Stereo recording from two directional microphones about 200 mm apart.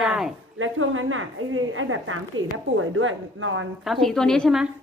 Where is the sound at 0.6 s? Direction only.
90° right.